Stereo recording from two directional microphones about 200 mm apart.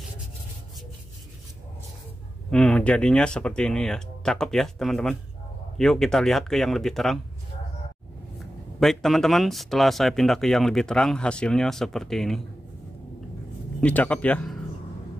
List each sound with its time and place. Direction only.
2.5 s speech: 5° left (ahead or behind)
8.7 s speech: centre (ahead or behind)
13.7 s speech: 5° left (ahead or behind)